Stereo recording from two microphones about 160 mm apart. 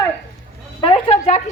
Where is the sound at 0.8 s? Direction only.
35° left (ahead or behind).